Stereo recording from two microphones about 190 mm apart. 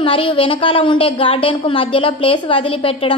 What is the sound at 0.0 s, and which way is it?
A woman's voice, 30° left (ahead or behind).